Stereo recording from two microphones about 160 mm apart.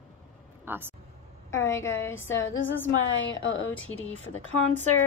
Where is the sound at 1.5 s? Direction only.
15° left (ahead or behind).